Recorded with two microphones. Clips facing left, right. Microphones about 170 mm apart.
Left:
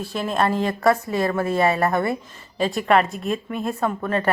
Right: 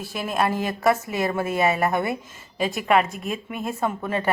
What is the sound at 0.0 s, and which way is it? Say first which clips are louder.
Speech: left 2 dB; 5° right (ahead or behind).